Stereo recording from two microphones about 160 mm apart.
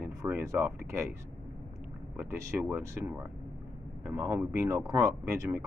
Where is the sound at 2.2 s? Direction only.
15° right (ahead or behind).